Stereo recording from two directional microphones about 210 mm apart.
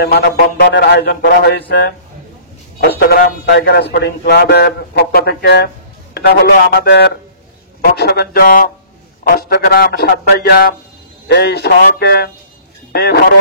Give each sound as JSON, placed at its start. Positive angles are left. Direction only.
{"t": 0.0, "sound": "speech", "side_deg": 50}